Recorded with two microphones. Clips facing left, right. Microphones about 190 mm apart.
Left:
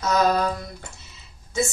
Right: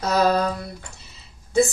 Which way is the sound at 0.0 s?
35° right (ahead or behind).